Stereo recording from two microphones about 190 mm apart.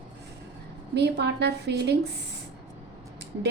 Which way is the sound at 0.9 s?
60° right (ahead or behind).